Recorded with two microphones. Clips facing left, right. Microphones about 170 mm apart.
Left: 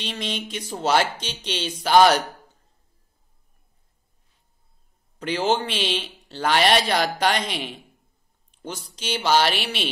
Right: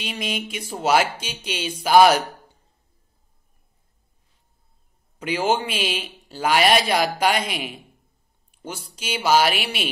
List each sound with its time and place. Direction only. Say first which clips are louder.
0.0 s a man's voice: right 1 dB; 10° right (ahead or behind)
5.2 s a man's voice: right 1 dB; 10° right (ahead or behind)